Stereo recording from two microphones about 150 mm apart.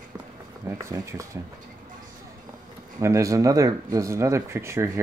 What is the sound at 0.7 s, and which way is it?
Speech, 20° right (ahead or behind).